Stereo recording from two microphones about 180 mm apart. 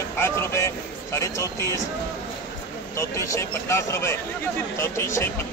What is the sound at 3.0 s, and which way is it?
Speech, 15° left (ahead or behind).